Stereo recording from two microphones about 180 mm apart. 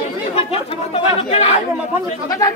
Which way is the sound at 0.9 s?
35° left (ahead or behind).